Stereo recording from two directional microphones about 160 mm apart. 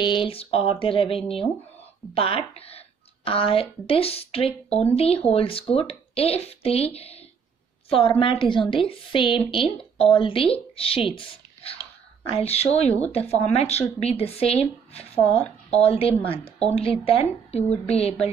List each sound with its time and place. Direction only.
0.0 s a woman's voice: 30° left (ahead or behind)